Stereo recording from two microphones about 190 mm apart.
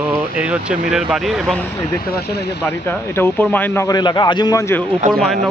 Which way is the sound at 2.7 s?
10° left (ahead or behind).